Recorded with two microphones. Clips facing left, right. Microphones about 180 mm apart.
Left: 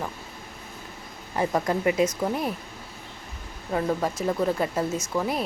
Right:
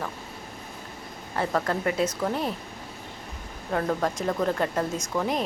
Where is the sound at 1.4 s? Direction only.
15° left (ahead or behind).